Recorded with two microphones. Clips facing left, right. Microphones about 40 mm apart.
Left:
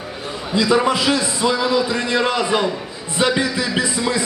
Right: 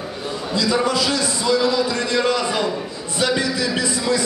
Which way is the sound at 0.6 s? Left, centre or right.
Left.